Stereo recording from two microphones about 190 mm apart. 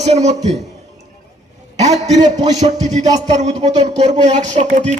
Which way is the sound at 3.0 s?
40° right (ahead or behind).